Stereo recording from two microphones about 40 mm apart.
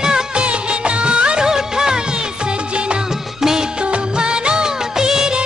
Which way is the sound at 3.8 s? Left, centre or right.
Right.